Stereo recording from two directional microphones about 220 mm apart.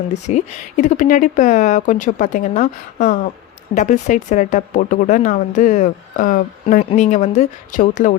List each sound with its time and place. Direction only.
0.1 s speech: 30° left (ahead or behind)